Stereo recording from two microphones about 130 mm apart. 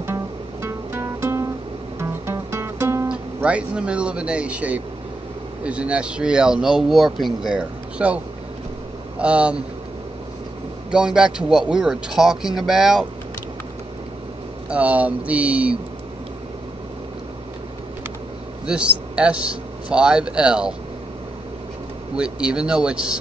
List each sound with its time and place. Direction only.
0.0 s music: 20° right (ahead or behind)
3.3 s a man's voice: 10° right (ahead or behind)
9.2 s a man's voice: 10° right (ahead or behind)
10.9 s a man's voice: 5° right (ahead or behind)
14.7 s a man's voice: 10° right (ahead or behind)
18.7 s a man's voice: 10° right (ahead or behind)
22.1 s a man's voice: 5° right (ahead or behind)